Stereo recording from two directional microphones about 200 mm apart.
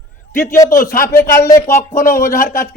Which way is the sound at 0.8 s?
45° left (ahead or behind).